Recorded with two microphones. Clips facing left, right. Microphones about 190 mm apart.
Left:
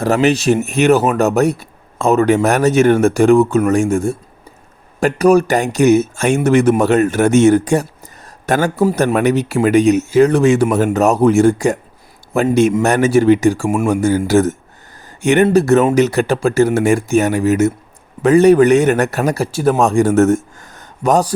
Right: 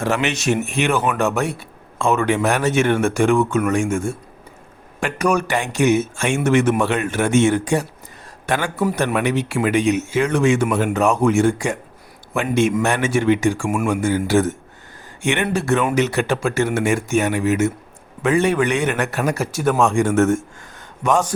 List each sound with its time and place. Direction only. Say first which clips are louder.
0.0 s speech: left 7 dB; 35° left (ahead or behind)